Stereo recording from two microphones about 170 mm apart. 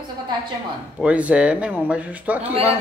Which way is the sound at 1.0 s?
10° right (ahead or behind).